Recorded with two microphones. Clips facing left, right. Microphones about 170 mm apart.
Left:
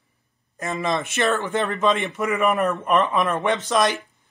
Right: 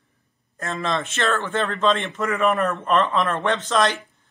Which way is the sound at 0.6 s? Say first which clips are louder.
Left 1 dB; 15° left (ahead or behind).